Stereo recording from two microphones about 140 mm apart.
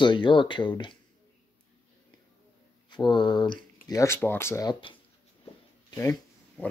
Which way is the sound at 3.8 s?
20° left (ahead or behind).